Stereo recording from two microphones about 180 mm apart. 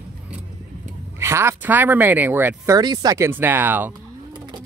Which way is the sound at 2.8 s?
20° right (ahead or behind).